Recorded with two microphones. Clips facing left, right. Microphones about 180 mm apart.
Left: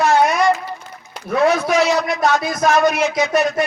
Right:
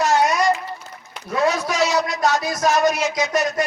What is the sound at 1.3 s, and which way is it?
A man's voice, 60° left (ahead or behind).